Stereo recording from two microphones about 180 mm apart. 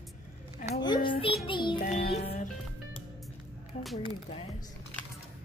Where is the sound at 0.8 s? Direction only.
25° left (ahead or behind).